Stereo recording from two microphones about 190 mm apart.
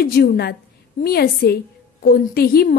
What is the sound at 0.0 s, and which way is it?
A woman's voice, 55° left (ahead or behind).